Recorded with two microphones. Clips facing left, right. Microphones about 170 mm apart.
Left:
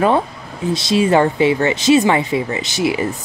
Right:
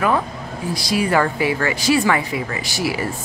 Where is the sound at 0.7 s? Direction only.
25° left (ahead or behind).